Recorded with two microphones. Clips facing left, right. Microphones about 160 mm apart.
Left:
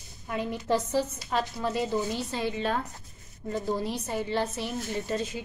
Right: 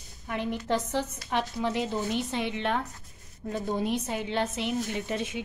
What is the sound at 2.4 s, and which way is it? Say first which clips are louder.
Speech: left 1 dB; 70° right (ahead or behind).